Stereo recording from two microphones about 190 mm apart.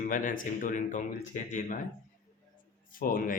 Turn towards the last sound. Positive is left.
turn(degrees=45)  # may be behind; listen again after turning